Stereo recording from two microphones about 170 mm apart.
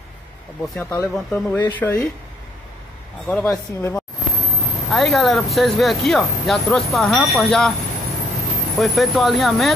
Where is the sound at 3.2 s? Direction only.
Centre (ahead or behind).